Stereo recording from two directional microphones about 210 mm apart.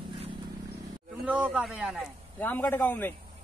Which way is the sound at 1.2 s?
5° right (ahead or behind).